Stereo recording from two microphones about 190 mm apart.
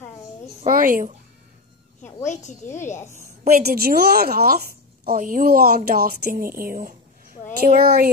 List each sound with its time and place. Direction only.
0.6 s a woman's voice: 45° right (ahead or behind)
2.2 s speech: 40° left (ahead or behind)
3.4 s a woman's voice: 50° right (ahead or behind)